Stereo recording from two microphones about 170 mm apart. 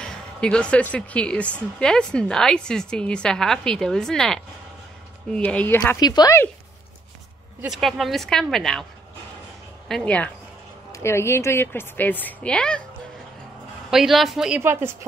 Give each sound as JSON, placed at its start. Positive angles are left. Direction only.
{"t": 0.0, "sound": "a woman's voice", "side_deg": 5}
{"t": 5.9, "sound": "speech", "side_deg": 25}
{"t": 7.6, "sound": "a woman's voice", "side_deg": 0}
{"t": 9.8, "sound": "a woman's voice", "side_deg": 5}
{"t": 13.8, "sound": "a woman's voice", "side_deg": 0}
{"t": 14.6, "sound": "speech", "side_deg": -15}